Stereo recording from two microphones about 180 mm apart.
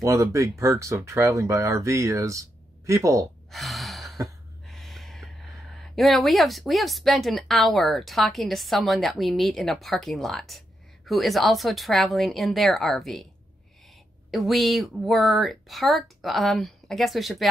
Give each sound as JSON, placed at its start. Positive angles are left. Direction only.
{"t": 0.0, "sound": "speech", "side_deg": -15}
{"t": 3.5, "sound": "gasp", "side_deg": 0}
{"t": 4.6, "sound": "speech", "side_deg": 0}
{"t": 14.3, "sound": "speech", "side_deg": 0}